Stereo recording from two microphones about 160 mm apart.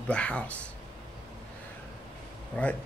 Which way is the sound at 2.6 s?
10° left (ahead or behind).